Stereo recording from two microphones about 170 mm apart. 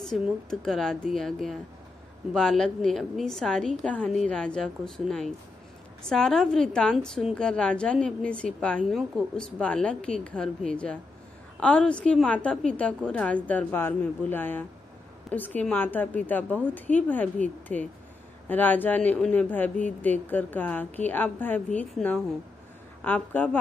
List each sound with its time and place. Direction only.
0.1 s a woman's voice: centre (ahead or behind)